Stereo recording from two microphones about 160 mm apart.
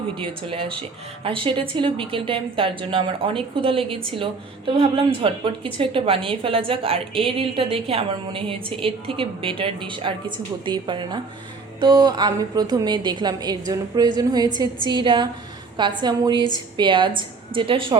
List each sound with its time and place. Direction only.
0.2 s a woman's voice: 35° right (ahead or behind)